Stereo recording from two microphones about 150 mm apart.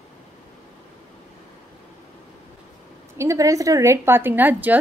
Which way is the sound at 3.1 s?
20° right (ahead or behind).